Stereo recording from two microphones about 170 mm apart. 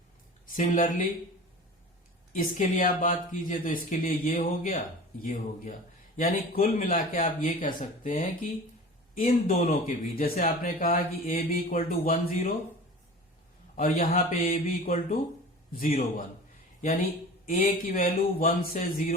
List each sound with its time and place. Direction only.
0.4 s speech: 50° left (ahead or behind)
2.3 s speech: 55° left (ahead or behind)
9.6 s speech: 55° left (ahead or behind)
13.7 s speech: 50° left (ahead or behind)